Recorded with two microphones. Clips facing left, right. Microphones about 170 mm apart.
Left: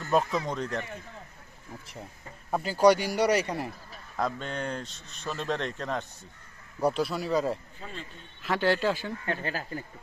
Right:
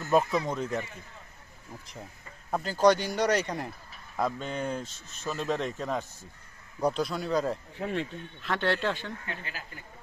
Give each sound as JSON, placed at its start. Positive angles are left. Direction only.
{"t": 0.0, "sound": "speech", "side_deg": -5}
{"t": 2.5, "sound": "speech", "side_deg": 5}
{"t": 4.2, "sound": "speech", "side_deg": -5}
{"t": 7.7, "sound": "speech", "side_deg": -70}
{"t": 8.4, "sound": "speech", "side_deg": 5}
{"t": 9.2, "sound": "speech", "side_deg": 40}